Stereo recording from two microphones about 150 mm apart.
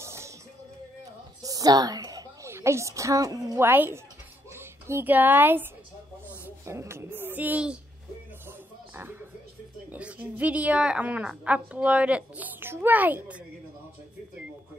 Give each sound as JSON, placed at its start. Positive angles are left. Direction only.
{"t": 0.0, "sound": "music", "side_deg": -20}
{"t": 1.4, "sound": "a woman's voice", "side_deg": -25}
{"t": 6.2, "sound": "a sound", "side_deg": -20}
{"t": 8.5, "sound": "music", "side_deg": -15}
{"t": 9.8, "sound": "a woman's voice", "side_deg": -10}